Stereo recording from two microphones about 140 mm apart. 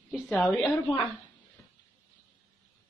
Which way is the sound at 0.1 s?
10° left (ahead or behind).